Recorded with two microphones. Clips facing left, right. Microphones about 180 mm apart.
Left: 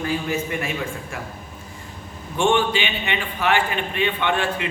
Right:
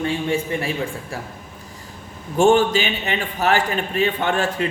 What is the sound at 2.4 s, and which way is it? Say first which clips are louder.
A man's voice: right 5 dB; 40° right (ahead or behind).